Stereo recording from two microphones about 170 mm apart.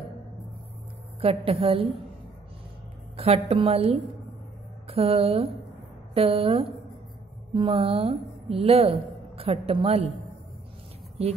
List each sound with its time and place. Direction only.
1.2 s a woman's voice: 35° right (ahead or behind)
3.2 s a woman's voice: 35° right (ahead or behind)